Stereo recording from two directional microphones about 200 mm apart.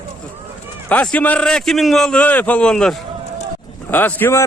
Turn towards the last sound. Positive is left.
turn(degrees=10)  # may be behind; listen again after turning